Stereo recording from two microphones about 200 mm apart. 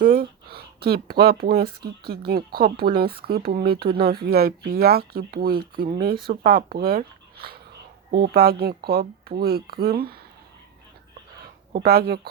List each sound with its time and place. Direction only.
0.0 s a sound: 45° right (ahead or behind)
1.2 s speech: 50° right (ahead or behind)
11.7 s speech: 50° right (ahead or behind)